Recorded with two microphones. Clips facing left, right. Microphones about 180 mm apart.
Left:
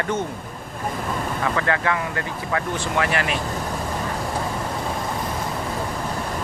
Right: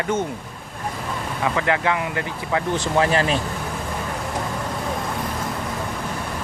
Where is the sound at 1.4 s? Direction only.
15° right (ahead or behind).